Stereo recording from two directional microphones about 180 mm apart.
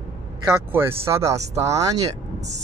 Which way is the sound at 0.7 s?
15° right (ahead or behind).